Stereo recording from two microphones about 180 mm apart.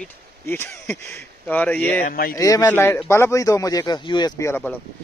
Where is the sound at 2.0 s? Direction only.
55° left (ahead or behind).